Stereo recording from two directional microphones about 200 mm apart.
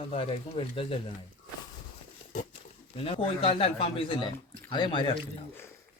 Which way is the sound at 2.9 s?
30° left (ahead or behind).